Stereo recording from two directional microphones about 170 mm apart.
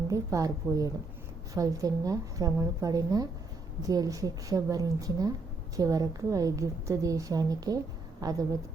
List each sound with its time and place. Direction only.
0.1 s a woman's voice: 20° right (ahead or behind)